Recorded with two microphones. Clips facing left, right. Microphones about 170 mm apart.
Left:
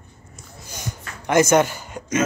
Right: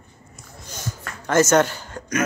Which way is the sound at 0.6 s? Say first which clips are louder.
Right 1 dB; 15° left (ahead or behind).